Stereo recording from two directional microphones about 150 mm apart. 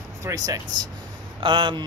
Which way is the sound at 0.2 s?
25° right (ahead or behind).